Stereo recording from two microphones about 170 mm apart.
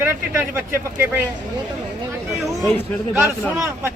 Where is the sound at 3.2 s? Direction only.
15° right (ahead or behind).